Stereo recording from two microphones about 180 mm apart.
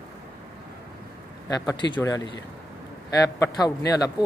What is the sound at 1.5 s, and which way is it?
Speech, 25° left (ahead or behind).